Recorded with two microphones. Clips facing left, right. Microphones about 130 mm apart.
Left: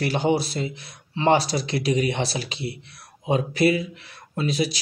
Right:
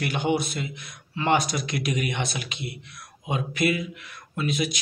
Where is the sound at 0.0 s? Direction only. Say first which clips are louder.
Left 3 dB; 35° left (ahead or behind).